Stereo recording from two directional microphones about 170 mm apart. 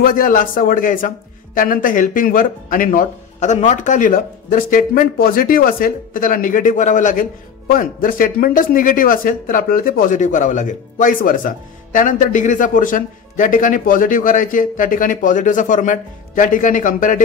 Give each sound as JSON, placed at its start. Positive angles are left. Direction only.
{"t": 0.0, "sound": "a man's voice", "side_deg": 55}